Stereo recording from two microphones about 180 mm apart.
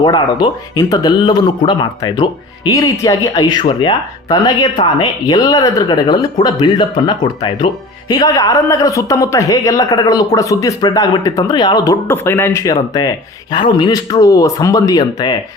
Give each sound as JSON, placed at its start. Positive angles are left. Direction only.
{"t": 0.0, "sound": "speech", "side_deg": 25}